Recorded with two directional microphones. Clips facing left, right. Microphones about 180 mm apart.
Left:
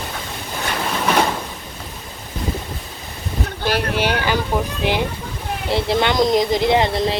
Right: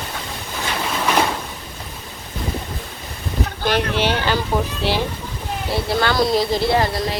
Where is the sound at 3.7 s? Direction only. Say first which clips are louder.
Even; 10° left (ahead or behind).